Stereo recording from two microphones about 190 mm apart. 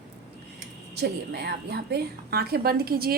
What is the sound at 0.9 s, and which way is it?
A woman's voice, 55° right (ahead or behind).